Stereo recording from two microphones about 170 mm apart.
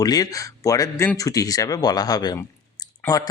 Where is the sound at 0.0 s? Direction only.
20° left (ahead or behind).